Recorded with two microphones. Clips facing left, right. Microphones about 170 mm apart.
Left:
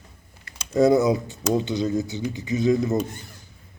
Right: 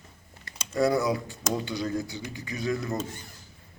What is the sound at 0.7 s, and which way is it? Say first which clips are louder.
Speech: left 7 dB; 20° left (ahead or behind).